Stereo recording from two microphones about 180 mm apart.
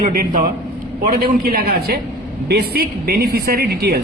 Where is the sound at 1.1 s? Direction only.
55° right (ahead or behind).